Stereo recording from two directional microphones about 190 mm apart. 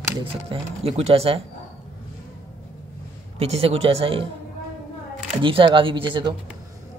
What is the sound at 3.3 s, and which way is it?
Speech, 35° right (ahead or behind).